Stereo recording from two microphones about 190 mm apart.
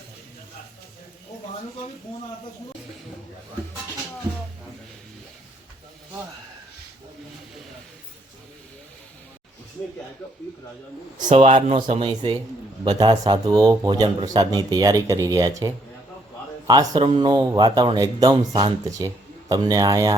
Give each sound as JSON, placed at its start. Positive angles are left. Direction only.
{"t": 11.3, "sound": "speech", "side_deg": -35}